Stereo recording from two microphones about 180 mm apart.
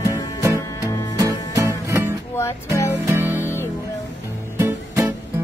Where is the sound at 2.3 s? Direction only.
15° left (ahead or behind).